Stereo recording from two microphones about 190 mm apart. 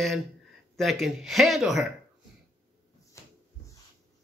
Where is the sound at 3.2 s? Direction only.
15° left (ahead or behind).